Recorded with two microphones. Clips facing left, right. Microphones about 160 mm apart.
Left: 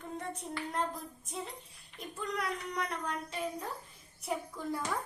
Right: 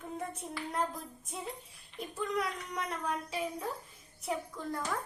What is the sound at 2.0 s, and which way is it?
Speech, centre (ahead or behind).